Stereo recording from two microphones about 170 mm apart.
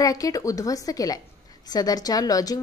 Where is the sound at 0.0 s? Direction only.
20° left (ahead or behind).